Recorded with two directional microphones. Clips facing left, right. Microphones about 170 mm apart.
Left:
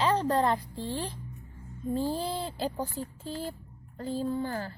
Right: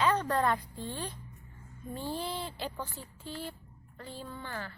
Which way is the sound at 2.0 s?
40° left (ahead or behind).